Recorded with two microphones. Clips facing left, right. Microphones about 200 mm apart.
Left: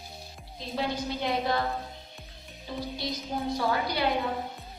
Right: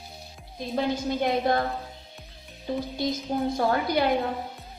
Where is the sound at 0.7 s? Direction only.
50° right (ahead or behind).